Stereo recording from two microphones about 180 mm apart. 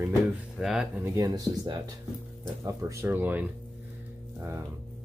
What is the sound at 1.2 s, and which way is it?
Speech, 20° right (ahead or behind).